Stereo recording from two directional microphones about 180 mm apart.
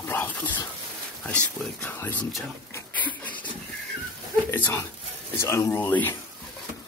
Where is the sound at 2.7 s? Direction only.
10° left (ahead or behind).